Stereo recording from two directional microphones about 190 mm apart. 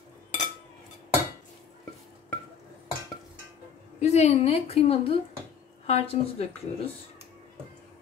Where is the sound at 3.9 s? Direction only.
35° left (ahead or behind).